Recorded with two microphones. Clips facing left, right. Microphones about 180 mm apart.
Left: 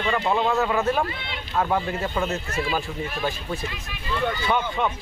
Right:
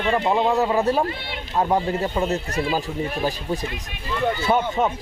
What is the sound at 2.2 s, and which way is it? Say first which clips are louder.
Speech: right 3 dB; 35° right (ahead or behind).